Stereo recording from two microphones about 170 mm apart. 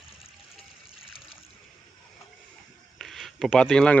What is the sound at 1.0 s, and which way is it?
Water, 35° left (ahead or behind).